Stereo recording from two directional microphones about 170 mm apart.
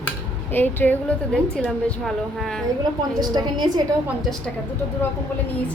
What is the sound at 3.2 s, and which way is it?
Speech, 25° right (ahead or behind).